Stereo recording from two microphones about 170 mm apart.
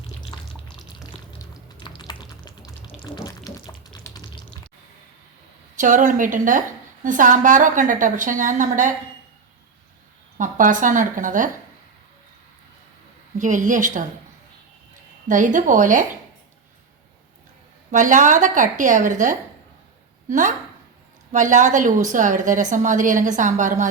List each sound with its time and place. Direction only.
1.4 s music: 25° left (ahead or behind)
3.2 s a sound: 20° left (ahead or behind)
5.7 s a woman's voice: 50° right (ahead or behind)
10.3 s a woman's voice: 50° right (ahead or behind)
13.4 s a woman's voice: 50° right (ahead or behind)
15.3 s a woman's voice: 50° right (ahead or behind)
17.9 s a woman's voice: 50° right (ahead or behind)
21.3 s a woman's voice: 45° right (ahead or behind)